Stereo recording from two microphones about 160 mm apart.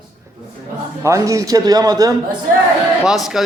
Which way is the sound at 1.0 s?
20° right (ahead or behind).